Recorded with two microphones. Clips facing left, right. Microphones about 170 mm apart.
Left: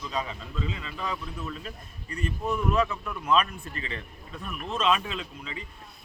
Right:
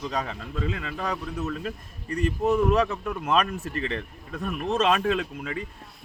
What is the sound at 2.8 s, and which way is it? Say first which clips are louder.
Speech: right 1 dB; 50° right (ahead or behind).